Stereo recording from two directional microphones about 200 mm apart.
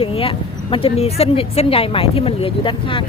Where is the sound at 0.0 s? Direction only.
25° left (ahead or behind).